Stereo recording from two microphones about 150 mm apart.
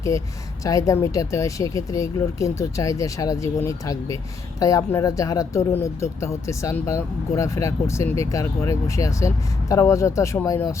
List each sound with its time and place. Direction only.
0.1 s speech: 20° left (ahead or behind)